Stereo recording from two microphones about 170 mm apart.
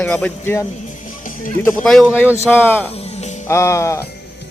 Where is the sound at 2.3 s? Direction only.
15° left (ahead or behind).